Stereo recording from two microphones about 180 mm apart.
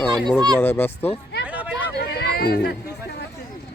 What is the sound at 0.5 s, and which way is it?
Speech, 10° left (ahead or behind).